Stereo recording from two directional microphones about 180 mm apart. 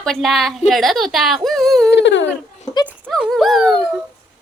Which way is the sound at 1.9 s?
75° left (ahead or behind).